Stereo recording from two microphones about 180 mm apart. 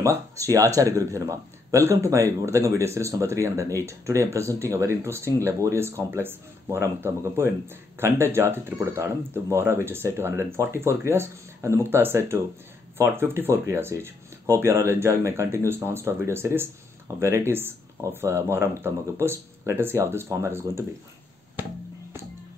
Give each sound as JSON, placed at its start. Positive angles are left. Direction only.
{"t": 0.4, "sound": "speech", "side_deg": -15}